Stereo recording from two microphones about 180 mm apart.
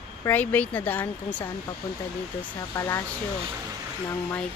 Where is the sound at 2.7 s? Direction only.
15° left (ahead or behind).